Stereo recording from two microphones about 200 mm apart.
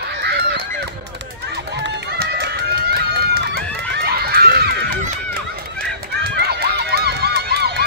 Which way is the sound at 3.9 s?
50° right (ahead or behind).